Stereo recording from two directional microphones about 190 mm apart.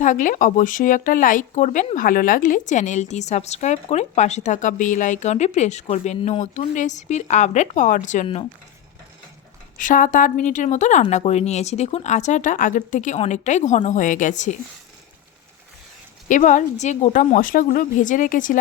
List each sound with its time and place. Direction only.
0.0 s speech: 45° left (ahead or behind)
9.7 s a woman's voice: 45° left (ahead or behind)
16.3 s a woman's voice: 40° left (ahead or behind)